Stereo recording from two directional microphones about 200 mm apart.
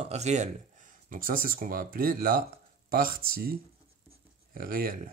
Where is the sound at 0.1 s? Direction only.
35° right (ahead or behind).